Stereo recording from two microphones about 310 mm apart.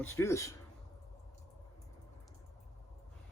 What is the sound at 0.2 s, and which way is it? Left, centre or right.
Speech, centre.